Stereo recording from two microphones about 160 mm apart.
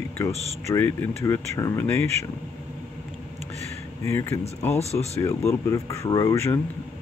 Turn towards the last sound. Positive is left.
turn(degrees=20)  # may be behind; listen again after turning